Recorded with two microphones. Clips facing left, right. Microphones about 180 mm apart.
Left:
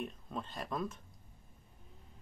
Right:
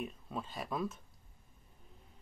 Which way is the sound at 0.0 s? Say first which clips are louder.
Even; 5° right (ahead or behind).